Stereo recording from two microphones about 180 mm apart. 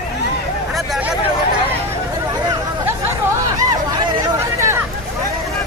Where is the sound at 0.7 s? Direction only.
Centre (ahead or behind).